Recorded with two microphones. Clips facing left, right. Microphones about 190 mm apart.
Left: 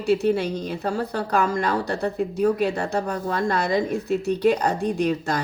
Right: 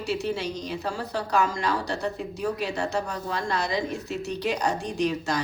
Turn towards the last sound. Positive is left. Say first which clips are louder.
# left 3 dB
turn(degrees=55)  # may be behind; listen again after turning